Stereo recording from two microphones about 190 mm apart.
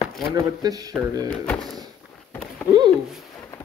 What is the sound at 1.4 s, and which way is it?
Speech, 5° left (ahead or behind).